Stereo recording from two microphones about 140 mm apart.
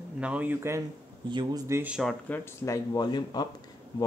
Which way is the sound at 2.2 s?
15° left (ahead or behind).